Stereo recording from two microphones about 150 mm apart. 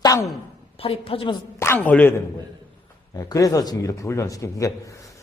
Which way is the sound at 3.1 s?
25° left (ahead or behind).